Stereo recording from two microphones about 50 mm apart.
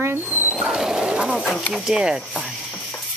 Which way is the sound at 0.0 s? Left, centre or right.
Right.